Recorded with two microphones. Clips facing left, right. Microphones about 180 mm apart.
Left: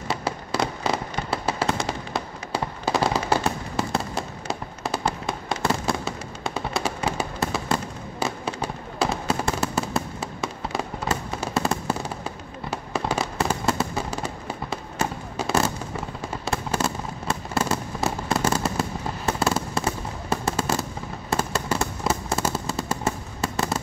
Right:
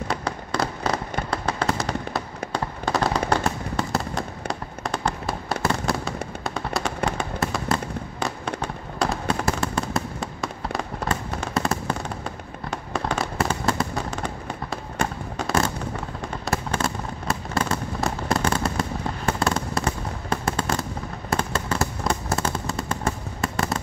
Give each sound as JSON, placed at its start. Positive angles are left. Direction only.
{"t": 0.1, "sound": "fireworks", "side_deg": 5}